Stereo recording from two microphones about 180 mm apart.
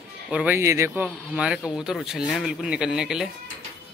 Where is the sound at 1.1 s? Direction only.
5° right (ahead or behind).